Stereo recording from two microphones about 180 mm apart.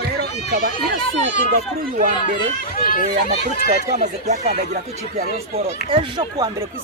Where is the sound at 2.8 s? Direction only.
55° left (ahead or behind).